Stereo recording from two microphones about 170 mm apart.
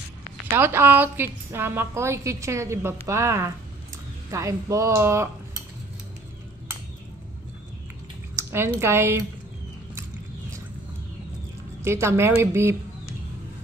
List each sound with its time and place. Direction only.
0.6 s a woman's voice: 15° right (ahead or behind)
8.4 s speech: 15° right (ahead or behind)
11.8 s a woman's voice: 15° right (ahead or behind)